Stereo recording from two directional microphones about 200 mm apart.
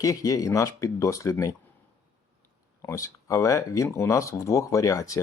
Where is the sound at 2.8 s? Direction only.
15° left (ahead or behind).